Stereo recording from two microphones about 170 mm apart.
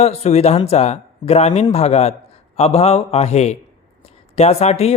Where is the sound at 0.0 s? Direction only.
40° left (ahead or behind).